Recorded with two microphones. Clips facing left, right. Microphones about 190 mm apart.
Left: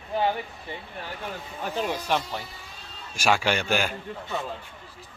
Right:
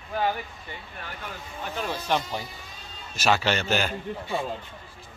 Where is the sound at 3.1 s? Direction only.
10° left (ahead or behind).